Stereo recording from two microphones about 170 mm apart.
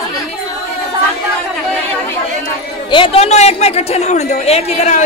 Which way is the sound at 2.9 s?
30° left (ahead or behind).